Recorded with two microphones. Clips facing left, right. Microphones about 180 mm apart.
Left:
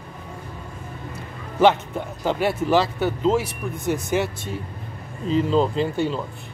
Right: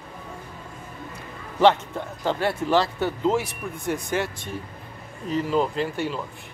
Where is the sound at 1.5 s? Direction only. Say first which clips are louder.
Left 1 dB; 10° left (ahead or behind).